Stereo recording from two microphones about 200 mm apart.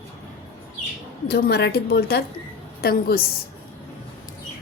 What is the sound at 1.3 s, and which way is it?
A woman's voice, 55° left (ahead or behind).